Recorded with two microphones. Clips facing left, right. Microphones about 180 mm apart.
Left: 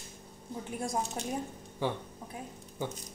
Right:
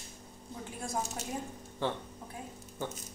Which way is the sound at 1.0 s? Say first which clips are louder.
Left 3 dB; 5° right (ahead or behind).